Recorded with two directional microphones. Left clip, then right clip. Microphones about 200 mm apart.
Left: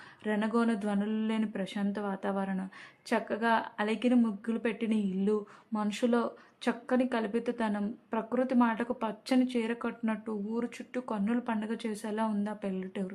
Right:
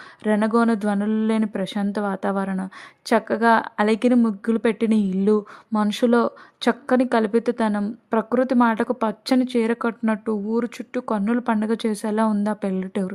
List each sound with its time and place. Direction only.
0.2 s speech: 45° right (ahead or behind)